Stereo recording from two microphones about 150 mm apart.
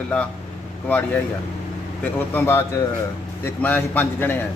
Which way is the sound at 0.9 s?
10° left (ahead or behind).